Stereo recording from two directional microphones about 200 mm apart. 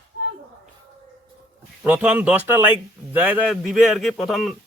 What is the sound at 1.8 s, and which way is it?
A man's voice, 5° right (ahead or behind).